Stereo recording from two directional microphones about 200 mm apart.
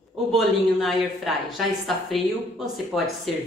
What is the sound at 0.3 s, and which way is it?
A man's voice, centre (ahead or behind).